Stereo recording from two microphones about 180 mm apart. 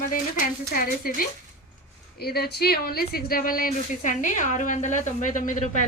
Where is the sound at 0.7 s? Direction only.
55° left (ahead or behind).